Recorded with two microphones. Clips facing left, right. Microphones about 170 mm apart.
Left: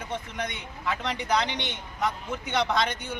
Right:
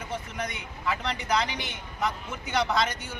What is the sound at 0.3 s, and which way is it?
A man's voice, centre (ahead or behind).